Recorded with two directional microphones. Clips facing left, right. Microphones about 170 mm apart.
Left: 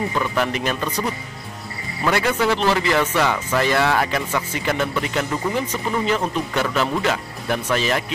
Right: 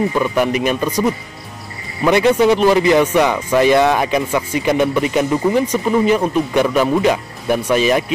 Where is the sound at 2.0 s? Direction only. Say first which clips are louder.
Right 8 dB; 20° right (ahead or behind).